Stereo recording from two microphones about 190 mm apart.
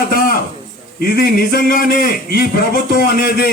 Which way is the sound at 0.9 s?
55° left (ahead or behind).